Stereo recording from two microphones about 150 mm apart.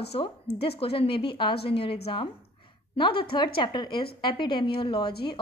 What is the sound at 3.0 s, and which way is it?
A woman's voice, 35° left (ahead or behind).